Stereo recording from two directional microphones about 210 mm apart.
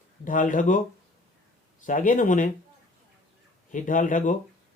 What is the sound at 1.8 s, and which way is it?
Speech, 40° left (ahead or behind).